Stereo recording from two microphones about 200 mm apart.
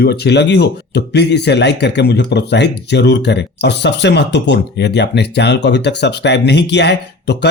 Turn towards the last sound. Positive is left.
turn(degrees=60)  # may be behind; listen again after turning